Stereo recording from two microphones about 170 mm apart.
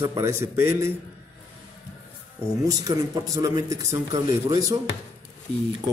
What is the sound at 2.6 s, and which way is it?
Speech, 20° right (ahead or behind).